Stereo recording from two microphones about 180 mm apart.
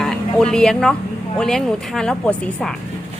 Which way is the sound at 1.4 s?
5° left (ahead or behind).